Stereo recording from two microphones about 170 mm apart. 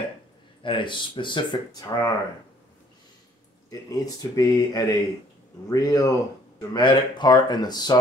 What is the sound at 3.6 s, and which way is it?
Speech, 20° left (ahead or behind).